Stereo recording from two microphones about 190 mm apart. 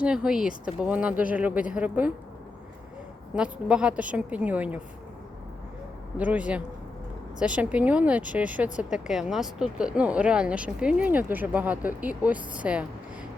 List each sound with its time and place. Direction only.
0.0 s speech: 5° right (ahead or behind)
3.3 s speech: 5° right (ahead or behind)
6.1 s speech: 5° right (ahead or behind)